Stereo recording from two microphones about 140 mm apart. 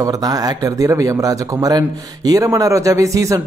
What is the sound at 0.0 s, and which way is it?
Speech, 25° right (ahead or behind).